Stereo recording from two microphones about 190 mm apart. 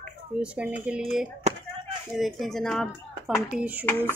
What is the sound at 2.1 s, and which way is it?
Speech, centre (ahead or behind).